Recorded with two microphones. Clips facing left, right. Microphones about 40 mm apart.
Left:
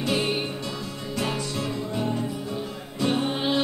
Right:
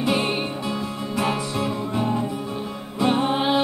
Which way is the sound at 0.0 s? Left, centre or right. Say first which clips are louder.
Right 3 dB; centre.